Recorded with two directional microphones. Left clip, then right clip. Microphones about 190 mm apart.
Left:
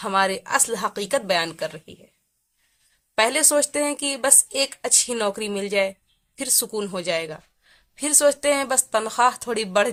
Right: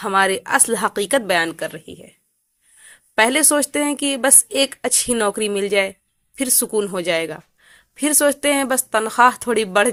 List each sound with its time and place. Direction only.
0.0 s speech: 20° right (ahead or behind)
3.2 s a woman's voice: 20° right (ahead or behind)